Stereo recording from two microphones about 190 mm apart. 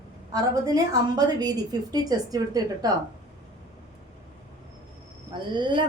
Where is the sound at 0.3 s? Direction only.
20° right (ahead or behind).